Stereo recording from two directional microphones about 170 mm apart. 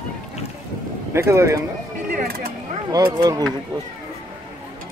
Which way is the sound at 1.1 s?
15° right (ahead or behind).